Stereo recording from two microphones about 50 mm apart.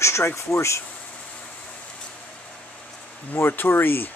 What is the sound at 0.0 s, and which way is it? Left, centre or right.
Speech, left.